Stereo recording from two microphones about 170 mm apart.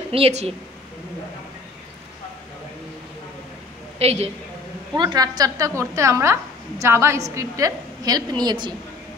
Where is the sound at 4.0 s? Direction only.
40° right (ahead or behind).